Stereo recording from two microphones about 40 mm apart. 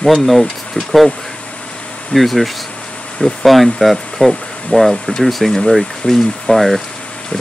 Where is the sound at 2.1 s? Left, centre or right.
Centre.